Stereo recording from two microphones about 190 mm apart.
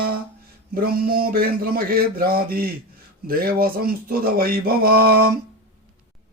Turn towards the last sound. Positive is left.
turn(degrees=-55)  # may be behind; listen again after turning